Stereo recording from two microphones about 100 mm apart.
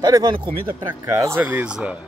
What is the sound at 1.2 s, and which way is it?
Speech, 30° right (ahead or behind).